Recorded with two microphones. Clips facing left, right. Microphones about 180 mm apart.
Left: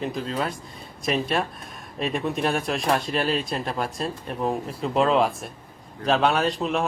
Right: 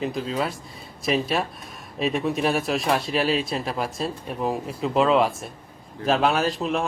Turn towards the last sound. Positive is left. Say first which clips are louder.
# even
turn(degrees=0)  # may be behind; listen again after turning